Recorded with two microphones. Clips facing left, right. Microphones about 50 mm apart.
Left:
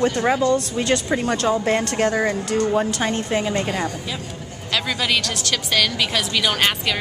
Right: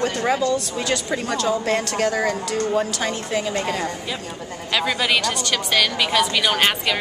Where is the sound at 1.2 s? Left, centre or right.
Left; by 3.9 s centre.